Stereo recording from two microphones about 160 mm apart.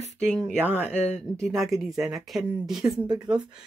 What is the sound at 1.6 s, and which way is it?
Speech, centre (ahead or behind).